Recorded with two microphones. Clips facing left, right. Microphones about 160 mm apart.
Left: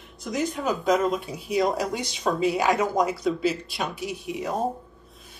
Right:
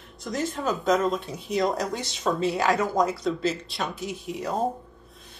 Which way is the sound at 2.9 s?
20° left (ahead or behind).